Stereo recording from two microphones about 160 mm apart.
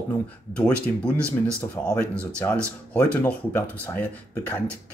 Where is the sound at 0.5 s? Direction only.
10° left (ahead or behind).